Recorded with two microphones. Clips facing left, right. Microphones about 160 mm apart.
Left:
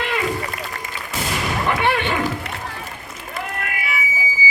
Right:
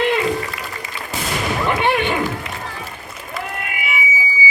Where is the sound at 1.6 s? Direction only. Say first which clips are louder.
Right 2 dB; 20° right (ahead or behind).